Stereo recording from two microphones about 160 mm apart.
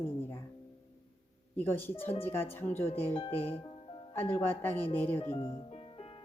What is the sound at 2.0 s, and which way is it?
Speech, 40° left (ahead or behind).